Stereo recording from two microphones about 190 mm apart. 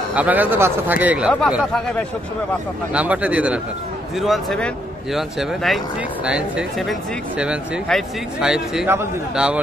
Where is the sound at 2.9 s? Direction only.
5° right (ahead or behind).